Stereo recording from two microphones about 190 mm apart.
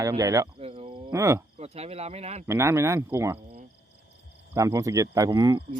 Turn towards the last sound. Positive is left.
turn(degrees=-20)  # may be behind; listen again after turning